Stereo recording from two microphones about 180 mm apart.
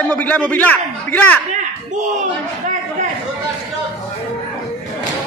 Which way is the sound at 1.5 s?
40° right (ahead or behind).